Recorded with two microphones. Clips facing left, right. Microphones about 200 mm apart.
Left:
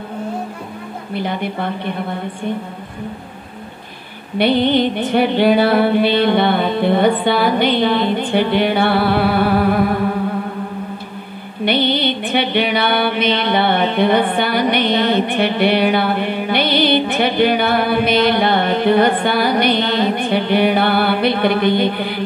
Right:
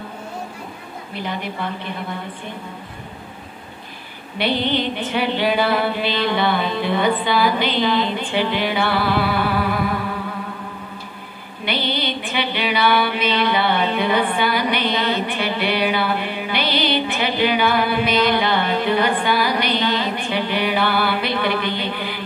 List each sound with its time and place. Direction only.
1.2 s music: 55° left (ahead or behind)
4.4 s music: 55° left (ahead or behind)
11.6 s music: 60° left (ahead or behind)